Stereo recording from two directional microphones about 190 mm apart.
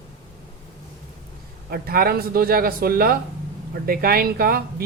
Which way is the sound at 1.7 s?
50° right (ahead or behind).